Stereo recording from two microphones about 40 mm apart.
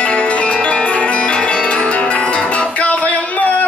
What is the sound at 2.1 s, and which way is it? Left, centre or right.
Guitar, left.